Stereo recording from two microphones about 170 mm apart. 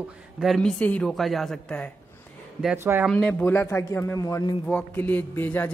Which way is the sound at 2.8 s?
15° right (ahead or behind).